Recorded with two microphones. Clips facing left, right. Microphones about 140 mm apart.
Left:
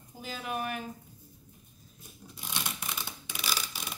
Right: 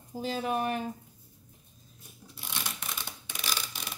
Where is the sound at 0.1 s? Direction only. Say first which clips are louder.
Right 6 dB; 30° right (ahead or behind).